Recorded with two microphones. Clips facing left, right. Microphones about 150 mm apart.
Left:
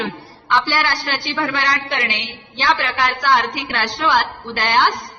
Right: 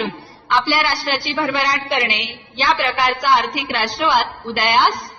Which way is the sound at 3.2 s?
10° right (ahead or behind).